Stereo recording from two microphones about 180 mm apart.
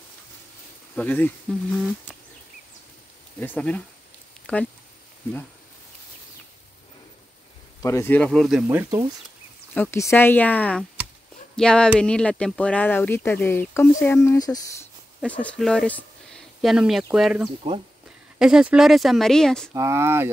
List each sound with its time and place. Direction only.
0.9 s speech: 10° left (ahead or behind)
3.3 s speech: 10° left (ahead or behind)
7.8 s speech: 15° left (ahead or behind)
8.6 s speech: 15° right (ahead or behind)
9.8 s speech: 15° left (ahead or behind)
15.1 s speech: 5° left (ahead or behind)
19.7 s speech: 15° right (ahead or behind)